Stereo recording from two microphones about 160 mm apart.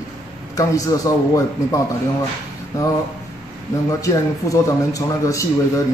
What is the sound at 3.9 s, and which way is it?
A man's voice, 20° left (ahead or behind).